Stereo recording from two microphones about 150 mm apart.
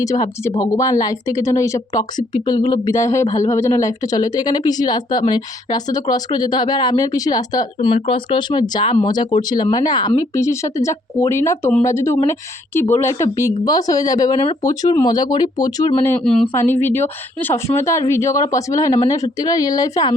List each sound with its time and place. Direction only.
0.0 s speech: 20° left (ahead or behind)
16.5 s speech: 15° left (ahead or behind)